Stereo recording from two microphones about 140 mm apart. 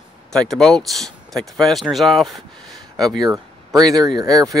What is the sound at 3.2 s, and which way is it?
Speech, 25° right (ahead or behind).